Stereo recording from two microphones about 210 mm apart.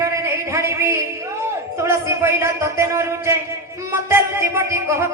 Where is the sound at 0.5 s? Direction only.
15° right (ahead or behind).